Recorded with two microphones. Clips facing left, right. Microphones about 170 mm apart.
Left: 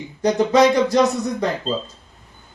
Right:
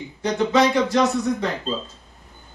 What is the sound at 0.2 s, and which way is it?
Speech, 40° left (ahead or behind).